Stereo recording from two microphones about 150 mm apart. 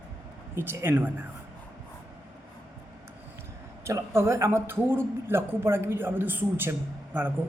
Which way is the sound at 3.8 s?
15° right (ahead or behind).